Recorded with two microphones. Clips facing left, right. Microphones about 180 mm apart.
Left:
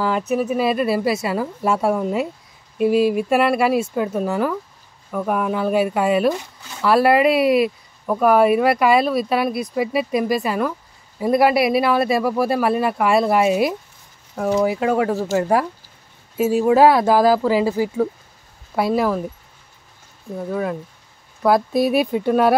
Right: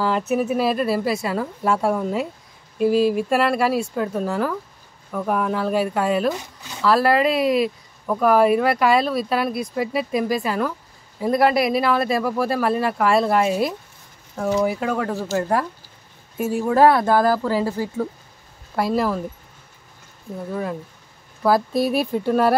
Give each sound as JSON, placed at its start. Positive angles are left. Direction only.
{"t": 0.0, "sound": "speech", "side_deg": 0}
{"t": 16.6, "sound": "speech", "side_deg": 10}
{"t": 21.4, "sound": "speech", "side_deg": 0}